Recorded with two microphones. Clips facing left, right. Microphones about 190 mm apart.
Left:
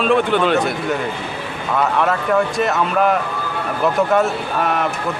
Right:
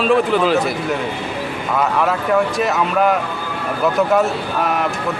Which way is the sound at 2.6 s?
Centre (ahead or behind).